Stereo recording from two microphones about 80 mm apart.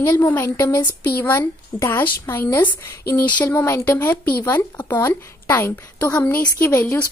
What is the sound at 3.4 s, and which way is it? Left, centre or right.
A woman's voice, left.